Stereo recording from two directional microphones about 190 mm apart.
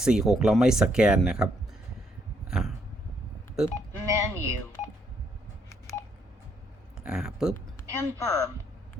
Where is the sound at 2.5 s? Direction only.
Centre (ahead or behind).